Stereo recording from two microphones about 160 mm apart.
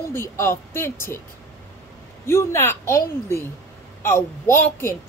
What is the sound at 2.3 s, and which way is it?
A woman's voice, 15° left (ahead or behind).